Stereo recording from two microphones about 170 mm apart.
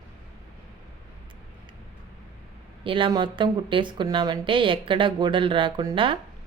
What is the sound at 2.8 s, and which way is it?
Speech, 30° right (ahead or behind).